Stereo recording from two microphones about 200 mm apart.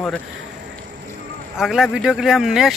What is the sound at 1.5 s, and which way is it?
A man's voice, centre (ahead or behind).